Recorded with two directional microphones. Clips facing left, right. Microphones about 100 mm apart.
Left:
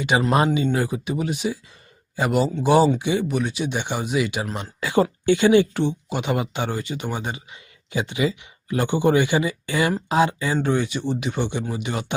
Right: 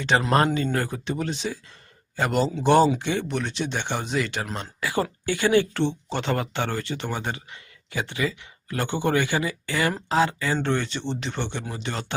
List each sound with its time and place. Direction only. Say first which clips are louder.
0.0 s speech: left 1 dB; 10° left (ahead or behind)
4.8 s speech: left 6 dB; 25° left (ahead or behind)